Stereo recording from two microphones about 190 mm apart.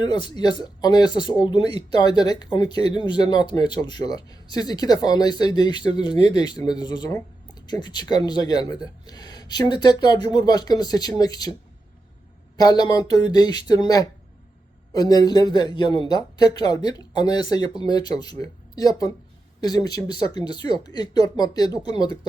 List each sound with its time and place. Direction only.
0.0 s speech: 25° left (ahead or behind)
12.5 s speech: 20° left (ahead or behind)